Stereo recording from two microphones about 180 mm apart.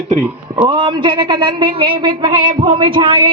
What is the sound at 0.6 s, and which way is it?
A woman's voice, 25° right (ahead or behind).